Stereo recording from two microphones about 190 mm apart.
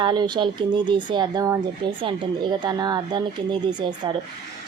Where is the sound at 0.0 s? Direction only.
25° right (ahead or behind).